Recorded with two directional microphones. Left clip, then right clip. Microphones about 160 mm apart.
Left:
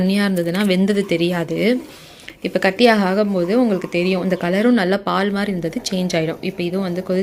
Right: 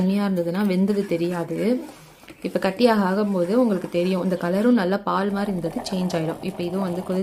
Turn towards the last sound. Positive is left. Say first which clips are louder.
# left 5 dB
turn(degrees=15)  # may be behind; listen again after turning